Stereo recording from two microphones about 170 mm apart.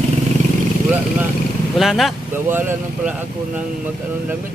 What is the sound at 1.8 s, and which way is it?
Speech, centre (ahead or behind).